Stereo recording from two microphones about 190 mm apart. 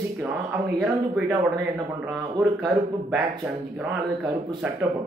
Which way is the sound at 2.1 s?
Centre (ahead or behind).